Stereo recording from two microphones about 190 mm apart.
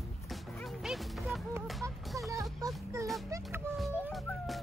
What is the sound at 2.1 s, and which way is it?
Music, 15° right (ahead or behind).